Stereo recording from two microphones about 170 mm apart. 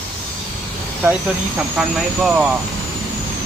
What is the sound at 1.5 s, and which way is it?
Speech, 5° right (ahead or behind).